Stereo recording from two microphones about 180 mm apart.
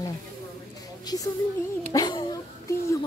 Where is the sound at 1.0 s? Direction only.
20° left (ahead or behind).